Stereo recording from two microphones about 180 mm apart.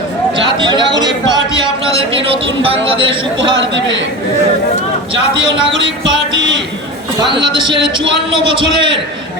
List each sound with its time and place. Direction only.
0.3 s speech: 25° right (ahead or behind)
7.2 s speech: 25° right (ahead or behind)